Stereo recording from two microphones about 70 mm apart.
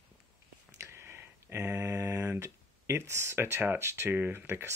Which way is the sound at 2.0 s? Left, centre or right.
Right.